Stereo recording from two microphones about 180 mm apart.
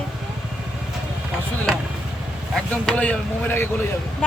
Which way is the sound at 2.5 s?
5° left (ahead or behind).